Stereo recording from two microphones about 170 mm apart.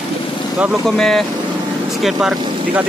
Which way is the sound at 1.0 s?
5° left (ahead or behind).